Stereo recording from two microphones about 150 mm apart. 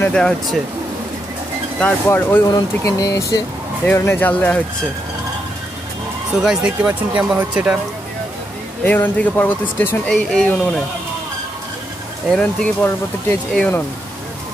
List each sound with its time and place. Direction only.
0.0 s speech: 5° left (ahead or behind)
1.8 s speech: 10° left (ahead or behind)
6.4 s speech: 5° right (ahead or behind)
8.8 s speech: 10° left (ahead or behind)
12.4 s speech: 5° left (ahead or behind)